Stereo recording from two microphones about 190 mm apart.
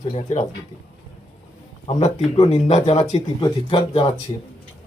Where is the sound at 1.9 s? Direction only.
35° left (ahead or behind).